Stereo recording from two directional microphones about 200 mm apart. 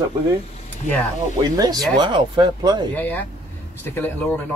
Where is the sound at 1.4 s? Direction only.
20° right (ahead or behind).